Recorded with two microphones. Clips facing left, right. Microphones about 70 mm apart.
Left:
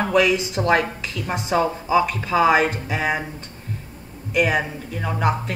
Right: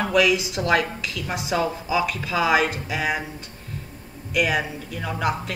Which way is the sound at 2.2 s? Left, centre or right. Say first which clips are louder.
Left 5 dB; left.